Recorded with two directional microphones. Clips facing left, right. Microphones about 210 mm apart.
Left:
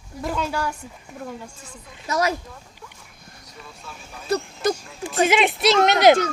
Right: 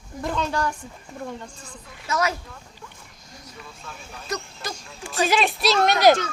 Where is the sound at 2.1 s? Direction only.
35° left (ahead or behind).